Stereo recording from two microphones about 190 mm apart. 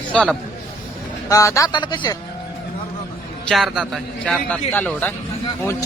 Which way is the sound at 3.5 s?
Centre (ahead or behind).